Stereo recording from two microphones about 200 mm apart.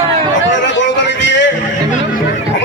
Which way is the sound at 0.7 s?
65° left (ahead or behind).